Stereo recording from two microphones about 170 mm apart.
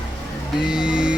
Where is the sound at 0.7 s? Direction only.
5° right (ahead or behind).